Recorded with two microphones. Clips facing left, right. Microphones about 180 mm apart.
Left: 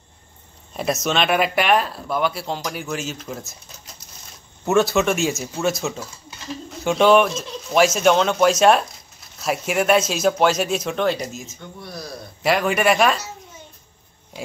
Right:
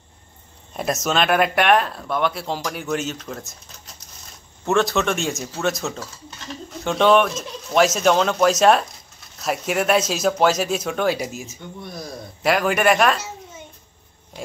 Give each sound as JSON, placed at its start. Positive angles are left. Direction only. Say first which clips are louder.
{"t": 1.0, "sound": "speech", "louder": "right 2 dB", "side_deg": 0}
{"t": 4.6, "sound": "speech", "louder": "left 2 dB", "side_deg": 5}
{"t": 11.5, "sound": "speech", "louder": "right 1 dB", "side_deg": -20}
{"t": 12.4, "sound": "speech", "louder": "even", "side_deg": 0}